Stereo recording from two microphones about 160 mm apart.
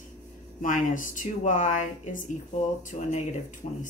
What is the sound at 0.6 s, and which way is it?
Speech, 55° left (ahead or behind).